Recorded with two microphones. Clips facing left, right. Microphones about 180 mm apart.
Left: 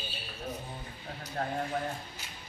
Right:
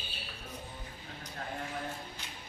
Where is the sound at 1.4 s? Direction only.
45° left (ahead or behind).